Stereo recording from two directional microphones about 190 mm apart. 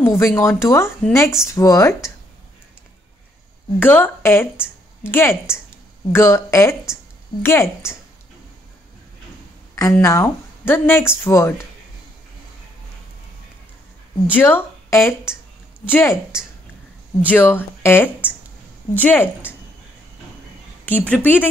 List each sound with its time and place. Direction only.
0.0 s speech: 15° left (ahead or behind)
3.8 s speech: 10° left (ahead or behind)
9.8 s speech: 15° left (ahead or behind)
14.3 s speech: 10° left (ahead or behind)
17.3 s speech: 10° left (ahead or behind)
20.8 s speech: 10° left (ahead or behind)